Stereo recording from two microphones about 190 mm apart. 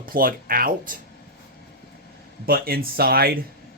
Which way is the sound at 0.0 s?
50° right (ahead or behind).